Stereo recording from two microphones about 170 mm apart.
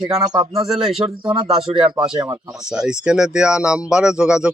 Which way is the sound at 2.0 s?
25° right (ahead or behind).